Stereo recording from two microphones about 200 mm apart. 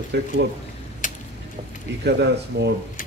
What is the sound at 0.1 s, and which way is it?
Speech, 55° right (ahead or behind).